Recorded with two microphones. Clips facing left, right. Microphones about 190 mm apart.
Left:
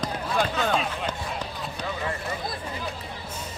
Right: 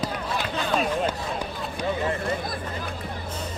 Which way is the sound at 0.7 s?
45° right (ahead or behind).